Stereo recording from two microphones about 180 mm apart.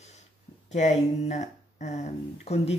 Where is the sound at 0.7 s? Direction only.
40° left (ahead or behind).